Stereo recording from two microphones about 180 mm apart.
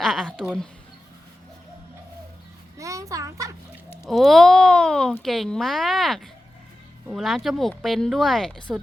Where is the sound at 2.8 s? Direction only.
20° right (ahead or behind).